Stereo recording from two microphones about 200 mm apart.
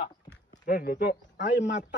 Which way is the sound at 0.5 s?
40° left (ahead or behind).